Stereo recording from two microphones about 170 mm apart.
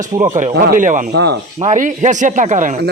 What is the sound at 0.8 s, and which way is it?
Speech, 50° right (ahead or behind).